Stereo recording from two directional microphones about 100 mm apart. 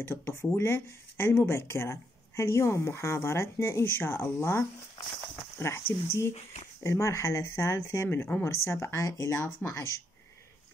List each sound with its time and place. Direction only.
0.0 s speech: 20° left (ahead or behind)